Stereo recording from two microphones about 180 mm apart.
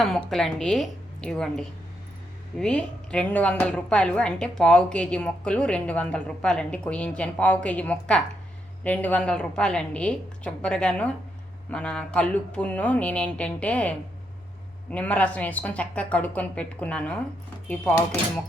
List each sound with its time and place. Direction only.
0.3 s a woman's voice: centre (ahead or behind)